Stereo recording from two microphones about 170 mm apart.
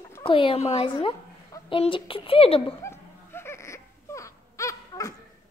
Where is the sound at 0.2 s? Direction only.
30° left (ahead or behind).